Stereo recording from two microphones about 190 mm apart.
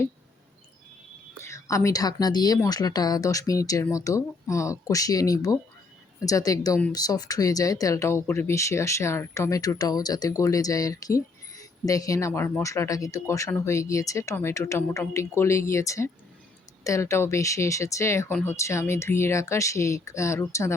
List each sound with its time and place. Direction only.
1.5 s a woman's voice: 15° left (ahead or behind)